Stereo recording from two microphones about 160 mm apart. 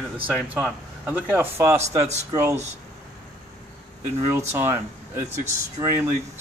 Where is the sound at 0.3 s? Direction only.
5° right (ahead or behind).